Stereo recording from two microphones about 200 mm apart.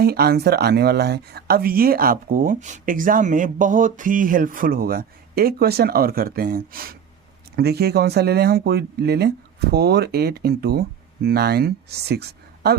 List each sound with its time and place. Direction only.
0.0 s speech: 50° right (ahead or behind)